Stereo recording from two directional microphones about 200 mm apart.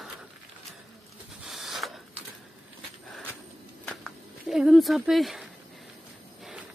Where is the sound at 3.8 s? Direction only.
Centre (ahead or behind).